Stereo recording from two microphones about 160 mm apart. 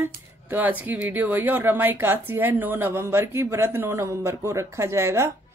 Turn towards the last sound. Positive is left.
turn(degrees=-15)  # may be behind; listen again after turning